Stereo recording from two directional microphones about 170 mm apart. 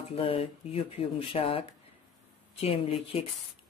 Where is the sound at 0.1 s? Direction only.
35° left (ahead or behind).